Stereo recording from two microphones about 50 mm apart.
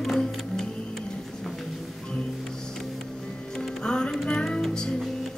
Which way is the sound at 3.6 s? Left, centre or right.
Centre.